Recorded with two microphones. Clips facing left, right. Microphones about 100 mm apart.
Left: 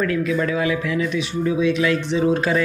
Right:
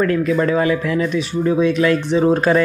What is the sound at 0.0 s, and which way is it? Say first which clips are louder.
Speech: right 4 dB; 45° right (ahead or behind).